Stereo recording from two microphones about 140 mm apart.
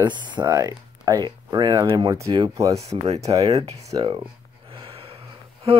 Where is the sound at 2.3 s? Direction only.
30° right (ahead or behind).